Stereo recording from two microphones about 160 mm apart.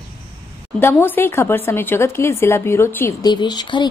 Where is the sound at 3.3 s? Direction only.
25° left (ahead or behind).